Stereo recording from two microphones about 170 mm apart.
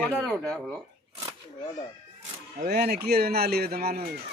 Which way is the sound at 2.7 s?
70° right (ahead or behind).